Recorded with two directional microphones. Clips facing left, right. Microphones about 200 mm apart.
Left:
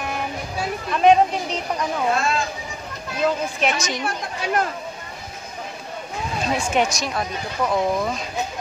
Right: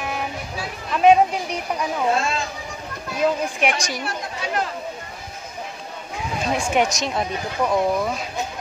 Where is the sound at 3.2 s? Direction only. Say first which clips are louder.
Right 1 dB; 15° right (ahead or behind).